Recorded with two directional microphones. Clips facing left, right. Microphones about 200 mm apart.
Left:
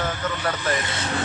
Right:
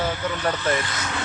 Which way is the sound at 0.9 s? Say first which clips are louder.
Left 3 dB; 30° left (ahead or behind).